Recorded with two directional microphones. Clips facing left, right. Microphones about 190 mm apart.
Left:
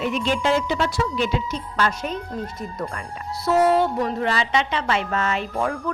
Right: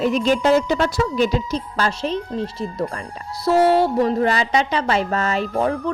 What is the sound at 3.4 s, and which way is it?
Speech, 30° right (ahead or behind).